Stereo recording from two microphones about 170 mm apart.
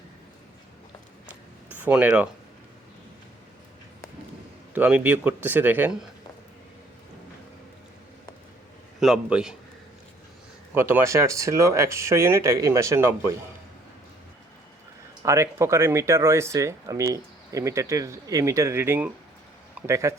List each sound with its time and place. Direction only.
1.3 s a sound: 10° right (ahead or behind)
4.7 s speech: 10° right (ahead or behind)
9.0 s a man's voice: centre (ahead or behind)
10.8 s speech: 15° right (ahead or behind)
15.2 s speech: 15° right (ahead or behind)